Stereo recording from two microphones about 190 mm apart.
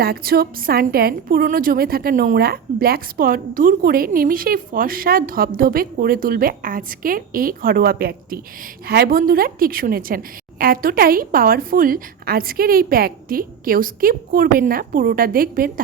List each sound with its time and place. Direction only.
0.0 s a woman's voice: 55° right (ahead or behind)